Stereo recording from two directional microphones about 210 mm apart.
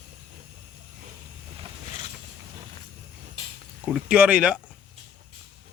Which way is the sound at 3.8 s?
5° right (ahead or behind).